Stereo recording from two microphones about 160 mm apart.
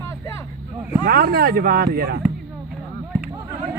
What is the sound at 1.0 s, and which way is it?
Speech, 75° right (ahead or behind).